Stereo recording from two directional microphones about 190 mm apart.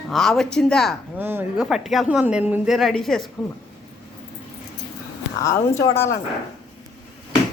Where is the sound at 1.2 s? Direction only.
10° right (ahead or behind).